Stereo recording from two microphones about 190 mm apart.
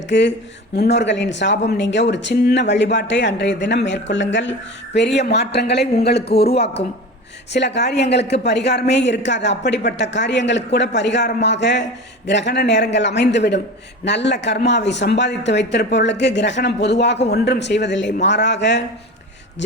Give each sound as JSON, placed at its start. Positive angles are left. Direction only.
{"t": 0.1, "sound": "a woman's voice", "side_deg": 70}
{"t": 4.9, "sound": "a woman's voice", "side_deg": 65}